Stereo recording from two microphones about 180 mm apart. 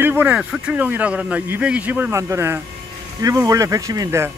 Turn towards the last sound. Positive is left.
turn(degrees=-15)  # may be behind; listen again after turning